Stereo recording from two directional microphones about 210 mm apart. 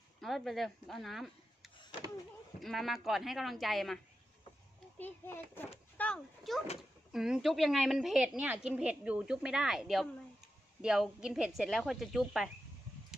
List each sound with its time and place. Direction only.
0.2 s a woman's voice: centre (ahead or behind)